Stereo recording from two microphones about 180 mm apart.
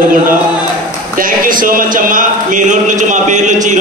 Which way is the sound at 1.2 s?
50° right (ahead or behind).